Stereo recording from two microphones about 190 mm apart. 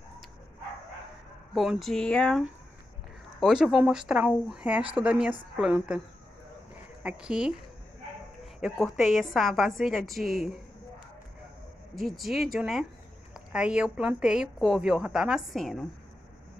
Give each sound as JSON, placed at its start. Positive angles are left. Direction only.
{"t": 1.5, "sound": "a woman's voice", "side_deg": 0}
{"t": 8.5, "sound": "a woman's voice", "side_deg": 0}
{"t": 12.0, "sound": "a woman's voice", "side_deg": 0}